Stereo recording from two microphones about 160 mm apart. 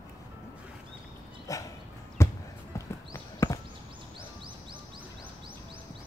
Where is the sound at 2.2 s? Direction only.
15° left (ahead or behind).